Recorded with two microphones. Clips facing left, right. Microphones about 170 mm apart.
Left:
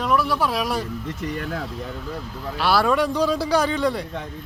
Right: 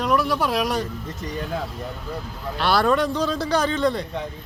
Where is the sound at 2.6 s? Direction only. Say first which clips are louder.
Even; 5° left (ahead or behind).